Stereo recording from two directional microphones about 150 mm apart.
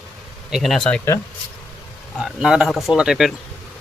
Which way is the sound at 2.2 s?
5° right (ahead or behind).